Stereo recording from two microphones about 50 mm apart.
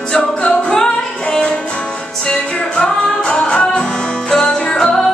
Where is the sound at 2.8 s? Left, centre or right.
Left.